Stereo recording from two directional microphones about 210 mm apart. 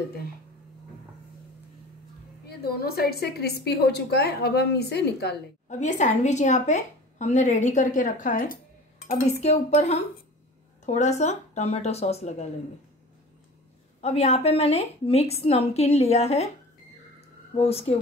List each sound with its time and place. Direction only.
2.4 s a woman's voice: 50° left (ahead or behind)
5.7 s a woman's voice: 35° left (ahead or behind)
14.0 s a woman's voice: 30° left (ahead or behind)
17.6 s speech: 30° left (ahead or behind)